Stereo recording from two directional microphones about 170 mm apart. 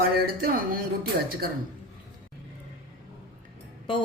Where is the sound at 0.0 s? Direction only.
60° right (ahead or behind).